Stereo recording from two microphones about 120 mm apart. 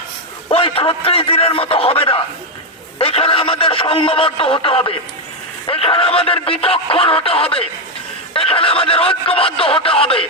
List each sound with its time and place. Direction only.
0.5 s speech: 50° left (ahead or behind)